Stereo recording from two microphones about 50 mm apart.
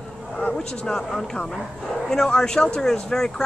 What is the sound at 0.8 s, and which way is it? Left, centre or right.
Speech, centre.